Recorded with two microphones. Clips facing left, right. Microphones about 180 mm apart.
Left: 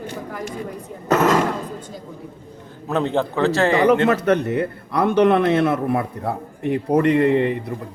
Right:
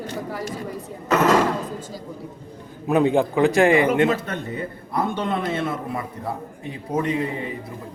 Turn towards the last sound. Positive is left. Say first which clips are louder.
# left 9 dB
turn(degrees=70)  # may be behind; listen again after turning